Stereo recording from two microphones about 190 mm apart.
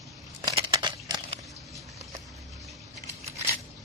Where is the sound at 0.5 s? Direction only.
25° right (ahead or behind).